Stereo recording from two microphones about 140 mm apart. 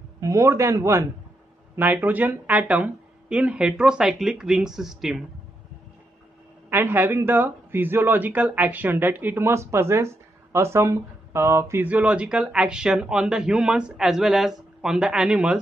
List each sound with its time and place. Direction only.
0.2 s speech: 20° right (ahead or behind); by 5.2 s 5° right (ahead or behind)
6.7 s speech: 15° right (ahead or behind)